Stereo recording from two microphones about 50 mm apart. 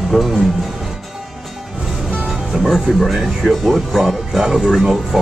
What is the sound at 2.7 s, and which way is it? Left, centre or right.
Speech, centre.